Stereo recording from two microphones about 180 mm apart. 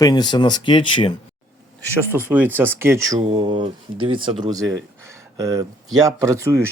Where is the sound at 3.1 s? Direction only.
30° right (ahead or behind).